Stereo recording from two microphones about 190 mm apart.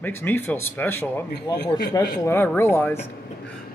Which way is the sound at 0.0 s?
10° left (ahead or behind).